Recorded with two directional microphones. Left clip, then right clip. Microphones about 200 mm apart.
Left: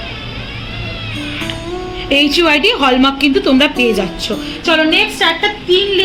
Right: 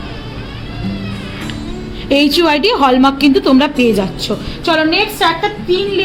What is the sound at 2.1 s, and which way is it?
A woman's voice, 50° right (ahead or behind).